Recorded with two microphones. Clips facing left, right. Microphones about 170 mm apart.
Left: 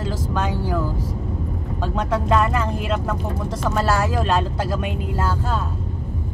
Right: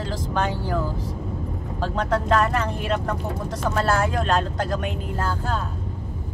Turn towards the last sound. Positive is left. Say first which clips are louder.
# left 1 dB
turn(degrees=5)  # may be behind; listen again after turning